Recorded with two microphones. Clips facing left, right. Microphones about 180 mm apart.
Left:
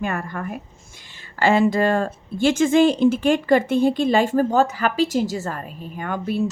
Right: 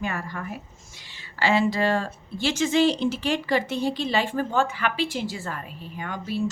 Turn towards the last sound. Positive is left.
turn(degrees=55)  # may be behind; listen again after turning